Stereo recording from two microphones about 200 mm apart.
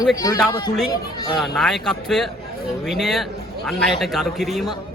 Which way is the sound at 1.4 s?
Centre (ahead or behind).